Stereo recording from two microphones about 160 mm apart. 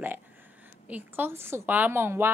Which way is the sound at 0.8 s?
10° right (ahead or behind).